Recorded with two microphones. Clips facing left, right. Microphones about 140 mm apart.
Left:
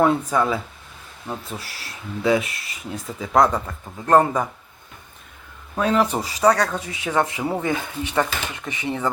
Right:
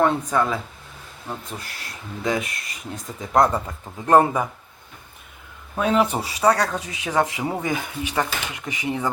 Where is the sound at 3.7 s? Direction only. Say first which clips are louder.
Even; 15° right (ahead or behind).